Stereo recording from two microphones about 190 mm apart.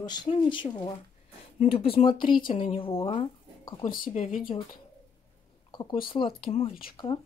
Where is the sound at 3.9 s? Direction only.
45° left (ahead or behind).